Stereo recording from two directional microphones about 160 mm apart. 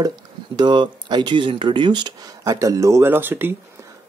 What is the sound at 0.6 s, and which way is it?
Speech, 30° right (ahead or behind).